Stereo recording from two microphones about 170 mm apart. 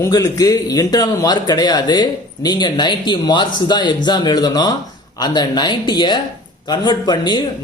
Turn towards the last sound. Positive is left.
turn(degrees=25)  # may be behind; listen again after turning